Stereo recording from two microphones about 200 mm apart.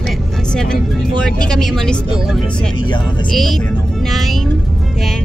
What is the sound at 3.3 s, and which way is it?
Speech, centre (ahead or behind).